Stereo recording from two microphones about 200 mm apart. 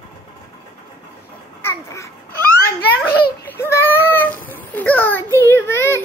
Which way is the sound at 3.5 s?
15° left (ahead or behind).